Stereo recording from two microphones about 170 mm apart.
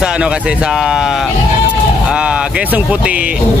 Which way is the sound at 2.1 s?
5° right (ahead or behind).